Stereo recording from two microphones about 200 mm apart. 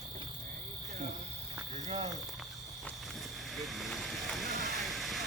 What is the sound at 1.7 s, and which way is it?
Cricket, 35° right (ahead or behind).